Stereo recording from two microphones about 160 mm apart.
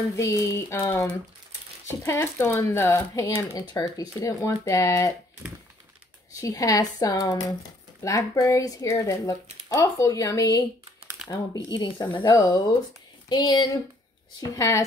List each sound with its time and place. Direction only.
0.1 s a sound: 20° left (ahead or behind)
2.0 s speech: 15° left (ahead or behind)
6.4 s speech: 20° left (ahead or behind)